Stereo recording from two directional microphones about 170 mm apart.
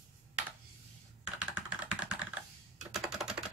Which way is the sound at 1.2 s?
5° right (ahead or behind).